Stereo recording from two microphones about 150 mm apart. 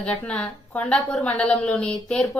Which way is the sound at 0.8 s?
5° left (ahead or behind).